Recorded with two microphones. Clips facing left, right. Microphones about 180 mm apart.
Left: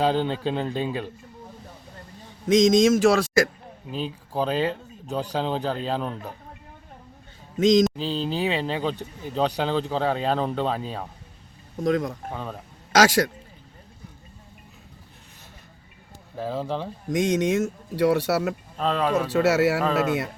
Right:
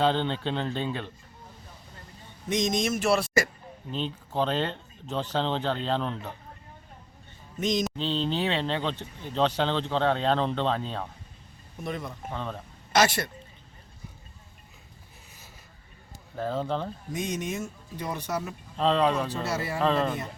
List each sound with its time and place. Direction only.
0.0 s speech: 10° left (ahead or behind)
2.2 s speech: 90° left
3.9 s speech: 5° left (ahead or behind)
7.5 s speech: 90° left
7.9 s speech: 5° left (ahead or behind)
11.8 s speech: 90° left
12.3 s speech: 10° left (ahead or behind)
12.9 s a man's voice: 90° left
16.3 s speech: 5° left (ahead or behind)
17.1 s speech: 80° left
18.8 s speech: 5° left (ahead or behind)
19.3 s a man's voice: 80° left
19.8 s speech: 5° left (ahead or behind)
20.1 s a man's voice: 80° left